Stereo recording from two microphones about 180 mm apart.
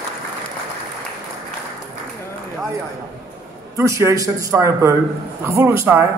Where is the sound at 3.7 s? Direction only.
15° right (ahead or behind).